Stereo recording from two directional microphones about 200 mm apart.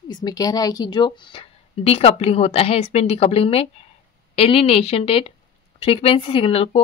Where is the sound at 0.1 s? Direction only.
20° left (ahead or behind).